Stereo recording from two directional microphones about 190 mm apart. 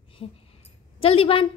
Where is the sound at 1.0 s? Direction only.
30° left (ahead or behind).